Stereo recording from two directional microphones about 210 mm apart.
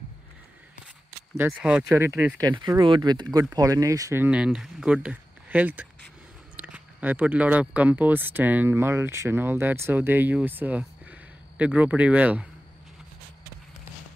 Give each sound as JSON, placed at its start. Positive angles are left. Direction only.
{"t": 1.3, "sound": "speech", "side_deg": -5}